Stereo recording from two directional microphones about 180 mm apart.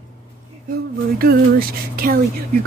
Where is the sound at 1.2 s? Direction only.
55° right (ahead or behind).